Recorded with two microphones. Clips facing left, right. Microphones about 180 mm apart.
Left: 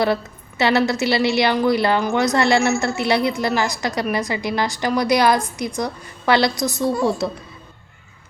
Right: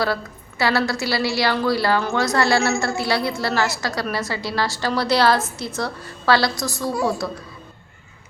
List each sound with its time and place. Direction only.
0.6 s a woman's voice: 20° left (ahead or behind)